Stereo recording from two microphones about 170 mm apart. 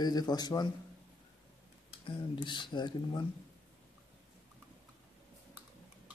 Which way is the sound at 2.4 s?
25° left (ahead or behind).